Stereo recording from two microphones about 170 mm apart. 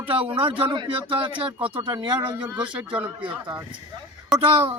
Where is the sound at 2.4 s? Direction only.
10° right (ahead or behind).